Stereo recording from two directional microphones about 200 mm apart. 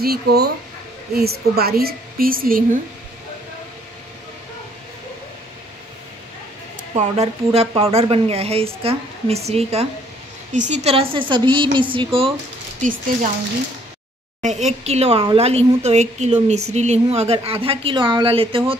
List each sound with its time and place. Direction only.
0.0 s a woman's voice: 50° right (ahead or behind)
7.0 s a woman's voice: 30° right (ahead or behind)
14.4 s a woman's voice: 35° right (ahead or behind)